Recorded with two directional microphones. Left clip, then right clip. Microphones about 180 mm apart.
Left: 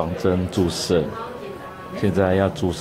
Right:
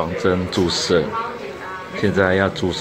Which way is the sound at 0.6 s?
45° left (ahead or behind).